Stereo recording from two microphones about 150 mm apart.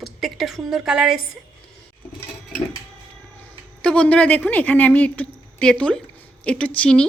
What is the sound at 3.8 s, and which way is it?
A woman's voice, 10° left (ahead or behind).